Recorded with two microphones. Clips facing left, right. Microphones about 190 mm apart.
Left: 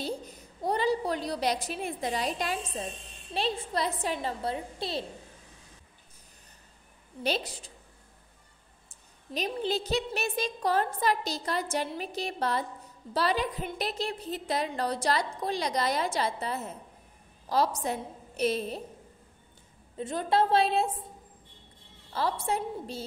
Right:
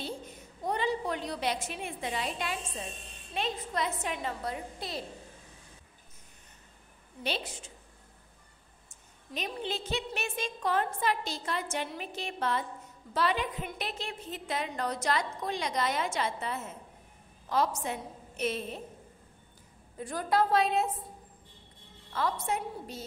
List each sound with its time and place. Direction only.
0.0 s a woman's voice: 35° left (ahead or behind)
7.2 s a woman's voice: 40° left (ahead or behind)
9.3 s a woman's voice: 35° left (ahead or behind)
20.0 s a woman's voice: 25° left (ahead or behind)
22.1 s a woman's voice: 30° left (ahead or behind)